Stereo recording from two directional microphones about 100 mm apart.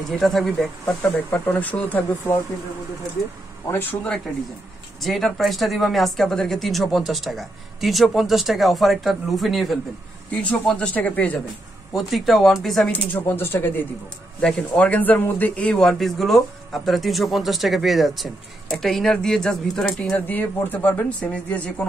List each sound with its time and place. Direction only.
0.1 s speech: centre (ahead or behind)
0.8 s speech: 15° left (ahead or behind)
3.7 s speech: 20° left (ahead or behind)
5.0 s speech: centre (ahead or behind)
10.5 s speech: 15° left (ahead or behind)
11.9 s speech: centre (ahead or behind)
12.9 s speech: 20° left (ahead or behind)